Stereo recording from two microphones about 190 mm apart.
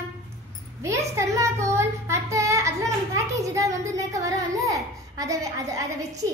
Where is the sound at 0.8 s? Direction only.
15° right (ahead or behind).